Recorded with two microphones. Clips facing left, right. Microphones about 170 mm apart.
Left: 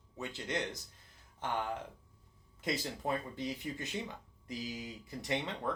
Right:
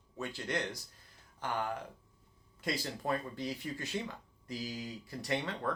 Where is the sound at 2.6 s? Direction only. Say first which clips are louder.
Even; 20° left (ahead or behind).